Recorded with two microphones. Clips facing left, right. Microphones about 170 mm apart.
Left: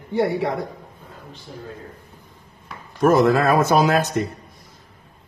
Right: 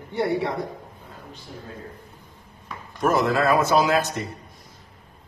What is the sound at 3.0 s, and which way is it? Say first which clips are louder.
Speech: left 5 dB; 50° left (ahead or behind).